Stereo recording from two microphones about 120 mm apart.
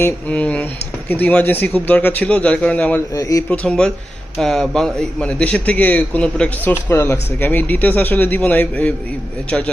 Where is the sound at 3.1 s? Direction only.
30° left (ahead or behind).